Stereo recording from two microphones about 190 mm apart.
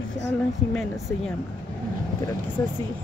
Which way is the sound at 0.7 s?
5° left (ahead or behind).